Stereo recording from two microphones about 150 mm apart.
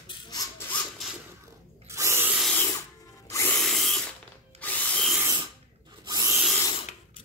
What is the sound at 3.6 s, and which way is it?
Drill, centre (ahead or behind).